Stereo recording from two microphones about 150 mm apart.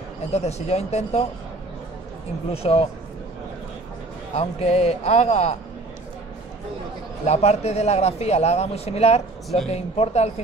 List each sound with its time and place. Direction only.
0.3 s a man's voice: 45° left (ahead or behind)
2.5 s speech: 40° left (ahead or behind)
4.4 s a man's voice: 45° left (ahead or behind)
7.2 s a man's voice: 45° left (ahead or behind)